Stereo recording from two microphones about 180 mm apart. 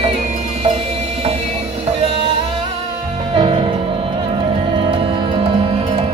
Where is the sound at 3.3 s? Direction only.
30° right (ahead or behind).